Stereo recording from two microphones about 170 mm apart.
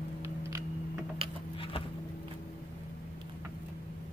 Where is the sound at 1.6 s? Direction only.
30° left (ahead or behind).